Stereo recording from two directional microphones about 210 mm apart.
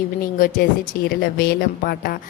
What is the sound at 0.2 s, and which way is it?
A woman's voice, 45° left (ahead or behind).